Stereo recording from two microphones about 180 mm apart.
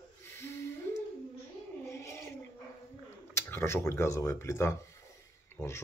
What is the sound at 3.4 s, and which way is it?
Speech, 15° left (ahead or behind).